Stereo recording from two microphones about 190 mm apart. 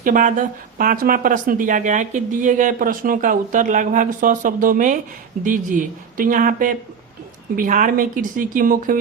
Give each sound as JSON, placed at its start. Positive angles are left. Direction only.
{"t": 0.0, "sound": "speech", "side_deg": -45}